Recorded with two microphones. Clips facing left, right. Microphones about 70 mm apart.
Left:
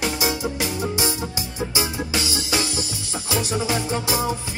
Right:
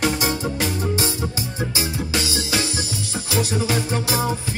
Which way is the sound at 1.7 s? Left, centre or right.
Left.